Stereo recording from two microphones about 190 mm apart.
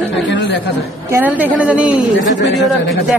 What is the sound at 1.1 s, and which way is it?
Speech, 10° right (ahead or behind).